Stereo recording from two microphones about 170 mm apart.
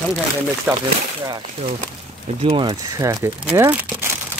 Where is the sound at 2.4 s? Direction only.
25° right (ahead or behind).